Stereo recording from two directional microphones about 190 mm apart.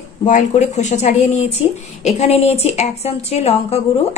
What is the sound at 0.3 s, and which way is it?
A woman's voice, 40° left (ahead or behind).